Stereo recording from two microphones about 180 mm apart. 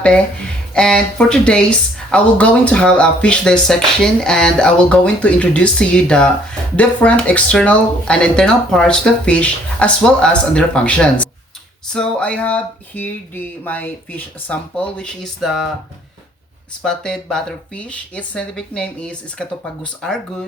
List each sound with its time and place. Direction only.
0.7 s speech: 5° left (ahead or behind)
16.8 s speech: 5° left (ahead or behind)